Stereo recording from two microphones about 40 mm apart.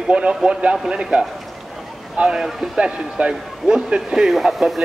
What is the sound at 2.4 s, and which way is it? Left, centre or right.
Speech, centre.